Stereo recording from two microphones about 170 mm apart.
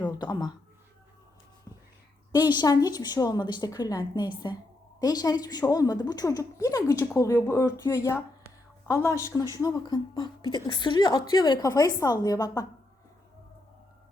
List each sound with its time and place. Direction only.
0.2 s a woman's voice: 25° left (ahead or behind)
2.4 s a woman's voice: 25° left (ahead or behind)